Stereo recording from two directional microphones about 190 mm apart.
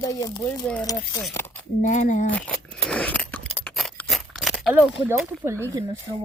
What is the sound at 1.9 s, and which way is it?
Speech, 40° left (ahead or behind).